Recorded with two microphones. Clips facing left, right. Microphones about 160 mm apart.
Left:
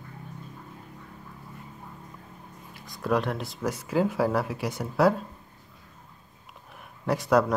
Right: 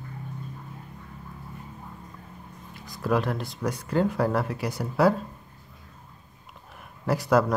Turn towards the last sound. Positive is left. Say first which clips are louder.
# even
turn(degrees=0)  # may be behind; listen again after turning